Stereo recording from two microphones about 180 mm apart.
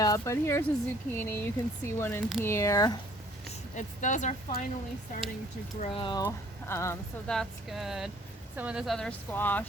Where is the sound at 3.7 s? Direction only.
45° left (ahead or behind).